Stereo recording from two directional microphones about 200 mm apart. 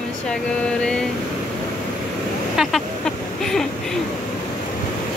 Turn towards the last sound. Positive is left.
turn(degrees=0)  # may be behind; listen again after turning